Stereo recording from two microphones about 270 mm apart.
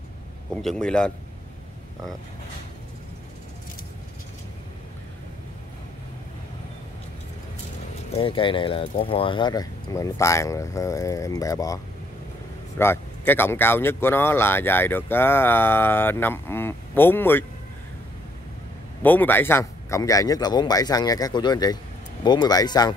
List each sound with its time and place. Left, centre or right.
0.5 s a man's voice: centre
8.1 s speech: centre
19.0 s speech: centre